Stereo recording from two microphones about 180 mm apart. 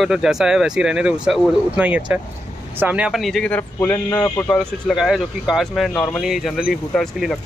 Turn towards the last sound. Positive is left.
turn(degrees=0)  # may be behind; listen again after turning